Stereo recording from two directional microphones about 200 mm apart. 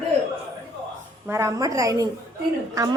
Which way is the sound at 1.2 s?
15° right (ahead or behind).